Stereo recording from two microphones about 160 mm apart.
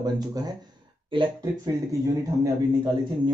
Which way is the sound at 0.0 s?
25° right (ahead or behind).